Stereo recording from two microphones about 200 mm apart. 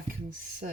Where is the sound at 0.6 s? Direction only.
45° right (ahead or behind).